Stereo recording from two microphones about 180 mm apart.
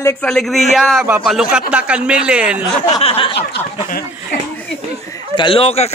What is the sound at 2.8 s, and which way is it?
Speech, 35° left (ahead or behind).